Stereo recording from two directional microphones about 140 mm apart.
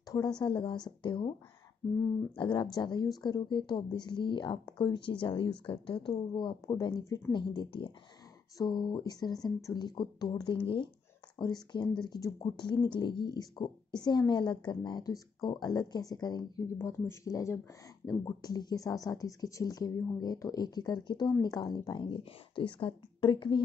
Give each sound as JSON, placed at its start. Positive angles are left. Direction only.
{"t": 0.1, "sound": "speech", "side_deg": 30}
{"t": 2.3, "sound": "speech", "side_deg": 35}
{"t": 16.7, "sound": "speech", "side_deg": 20}